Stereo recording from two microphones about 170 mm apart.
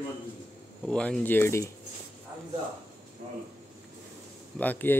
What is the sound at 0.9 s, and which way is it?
Speech, 5° left (ahead or behind).